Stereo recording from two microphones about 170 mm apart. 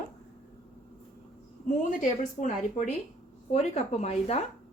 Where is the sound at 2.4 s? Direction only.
45° left (ahead or behind).